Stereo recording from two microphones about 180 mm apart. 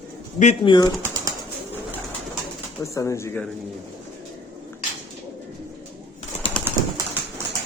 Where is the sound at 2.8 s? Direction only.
15° left (ahead or behind).